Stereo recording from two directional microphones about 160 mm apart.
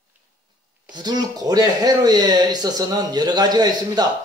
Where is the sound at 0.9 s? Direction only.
25° right (ahead or behind).